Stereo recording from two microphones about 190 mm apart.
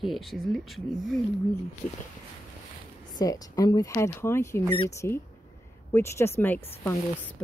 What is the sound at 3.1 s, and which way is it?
Speech, 20° left (ahead or behind).